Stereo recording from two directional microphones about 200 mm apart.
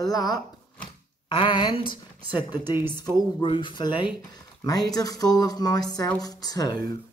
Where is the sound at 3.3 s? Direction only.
25° left (ahead or behind).